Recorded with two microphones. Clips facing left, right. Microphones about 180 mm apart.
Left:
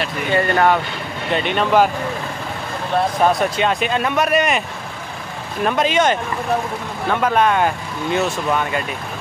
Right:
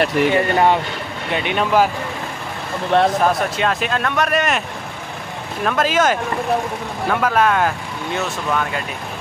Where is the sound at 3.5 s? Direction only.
Centre (ahead or behind).